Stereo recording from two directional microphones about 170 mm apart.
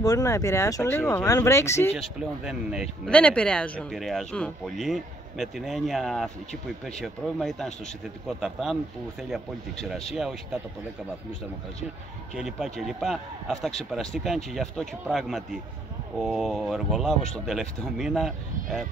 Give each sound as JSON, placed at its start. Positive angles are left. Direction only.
{"t": 0.0, "sound": "speech", "side_deg": 20}
{"t": 2.0, "sound": "speech", "side_deg": -5}
{"t": 3.1, "sound": "speech", "side_deg": 5}
{"t": 12.4, "sound": "speech", "side_deg": 0}